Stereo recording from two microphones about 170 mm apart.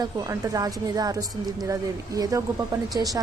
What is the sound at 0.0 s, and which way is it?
A woman's voice, 20° right (ahead or behind).